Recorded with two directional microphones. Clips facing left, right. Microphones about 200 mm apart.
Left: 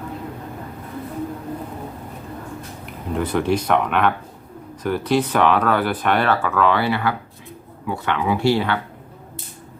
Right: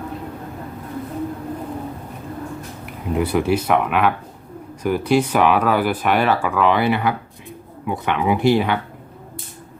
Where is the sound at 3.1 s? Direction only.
10° right (ahead or behind).